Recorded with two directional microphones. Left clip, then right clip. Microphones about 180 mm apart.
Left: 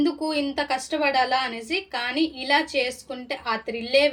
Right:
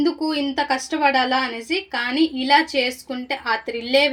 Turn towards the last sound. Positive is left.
turn(degrees=-35)  # may be behind; listen again after turning